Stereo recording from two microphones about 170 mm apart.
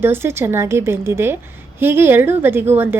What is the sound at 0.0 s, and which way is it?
A woman's voice, 15° right (ahead or behind).